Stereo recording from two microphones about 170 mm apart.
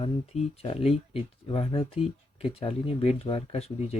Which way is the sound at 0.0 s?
35° left (ahead or behind).